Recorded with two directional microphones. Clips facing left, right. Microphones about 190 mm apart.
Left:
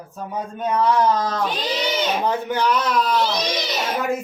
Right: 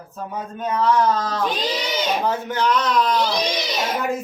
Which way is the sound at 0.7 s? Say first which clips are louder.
Even; 15° left (ahead or behind).